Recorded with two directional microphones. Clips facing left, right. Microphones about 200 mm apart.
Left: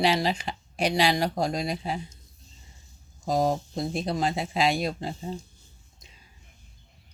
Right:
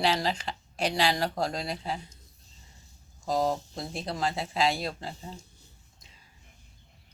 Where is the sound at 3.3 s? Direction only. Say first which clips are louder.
Left 3 dB; 15° left (ahead or behind).